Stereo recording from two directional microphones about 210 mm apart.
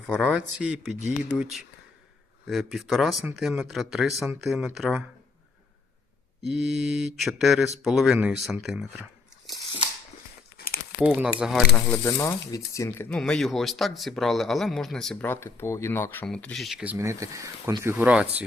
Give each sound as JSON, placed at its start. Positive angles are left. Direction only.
{"t": 0.0, "sound": "speech", "side_deg": 5}
{"t": 6.5, "sound": "speech", "side_deg": -5}
{"t": 11.0, "sound": "speech", "side_deg": -5}
{"t": 12.0, "sound": "speech", "side_deg": 15}